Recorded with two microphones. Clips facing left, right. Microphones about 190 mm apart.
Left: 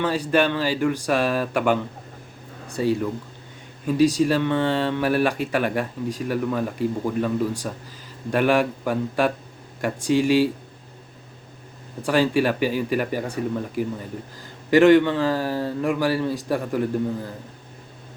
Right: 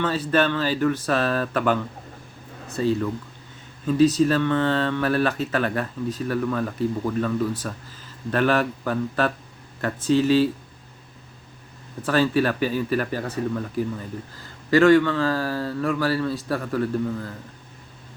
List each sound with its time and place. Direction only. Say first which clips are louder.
0.0 s speech: left 1 dB; 15° left (ahead or behind)
12.0 s speech: left 1 dB; 15° left (ahead or behind)